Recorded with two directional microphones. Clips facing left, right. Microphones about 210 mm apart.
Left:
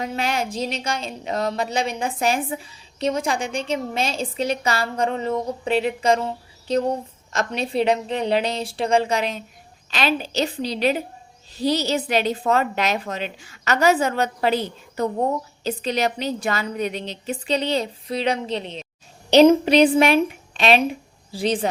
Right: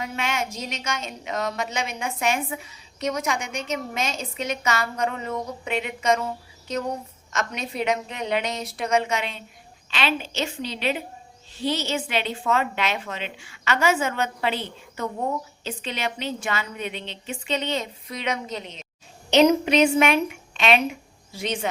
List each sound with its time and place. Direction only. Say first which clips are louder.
0.0 s a woman's voice: left 4 dB; 35° left (ahead or behind)